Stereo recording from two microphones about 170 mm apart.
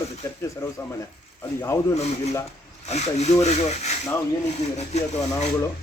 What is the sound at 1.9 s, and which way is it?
Speech, 40° left (ahead or behind).